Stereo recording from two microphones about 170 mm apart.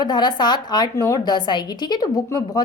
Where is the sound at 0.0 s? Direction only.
25° left (ahead or behind).